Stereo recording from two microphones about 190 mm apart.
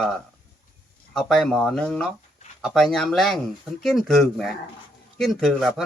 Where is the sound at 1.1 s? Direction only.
Centre (ahead or behind).